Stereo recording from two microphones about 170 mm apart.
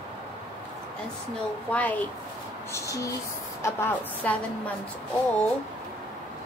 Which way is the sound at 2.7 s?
20° left (ahead or behind).